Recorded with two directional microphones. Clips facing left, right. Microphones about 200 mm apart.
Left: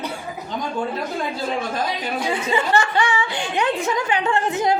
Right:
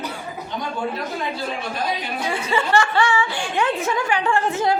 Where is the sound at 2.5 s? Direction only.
20° left (ahead or behind).